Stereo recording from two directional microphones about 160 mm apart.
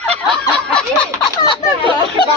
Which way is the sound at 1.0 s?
30° left (ahead or behind).